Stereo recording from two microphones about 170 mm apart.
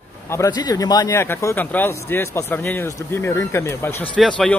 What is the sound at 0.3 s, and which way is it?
A man's voice, 20° left (ahead or behind).